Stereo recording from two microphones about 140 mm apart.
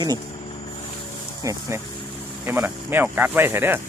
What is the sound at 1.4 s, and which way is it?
Speech, 20° right (ahead or behind).